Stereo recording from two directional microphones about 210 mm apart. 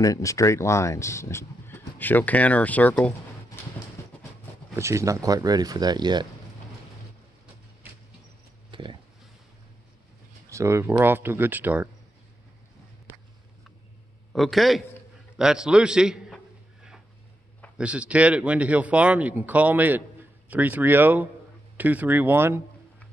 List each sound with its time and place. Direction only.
0.0 s speech: 15° left (ahead or behind)
3.6 s horse: 10° left (ahead or behind)
4.7 s speech: 15° right (ahead or behind)
8.7 s a sound: 25° right (ahead or behind)
10.5 s speech: 15° right (ahead or behind)
14.3 s a man's voice: centre (ahead or behind)
17.7 s speech: 5° right (ahead or behind)